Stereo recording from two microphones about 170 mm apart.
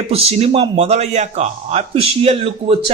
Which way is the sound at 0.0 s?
35° right (ahead or behind).